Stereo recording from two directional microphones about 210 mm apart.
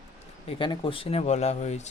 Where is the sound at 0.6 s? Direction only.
25° left (ahead or behind).